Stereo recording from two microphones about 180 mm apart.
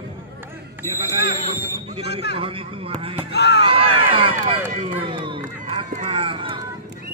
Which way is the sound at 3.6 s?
30° right (ahead or behind).